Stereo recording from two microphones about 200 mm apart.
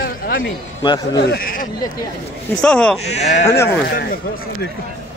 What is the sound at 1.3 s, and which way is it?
Speech, 45° left (ahead or behind).